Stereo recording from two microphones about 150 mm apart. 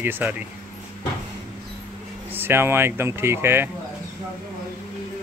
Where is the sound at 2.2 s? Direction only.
15° right (ahead or behind).